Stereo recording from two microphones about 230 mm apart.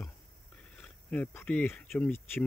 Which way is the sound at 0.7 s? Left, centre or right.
Centre.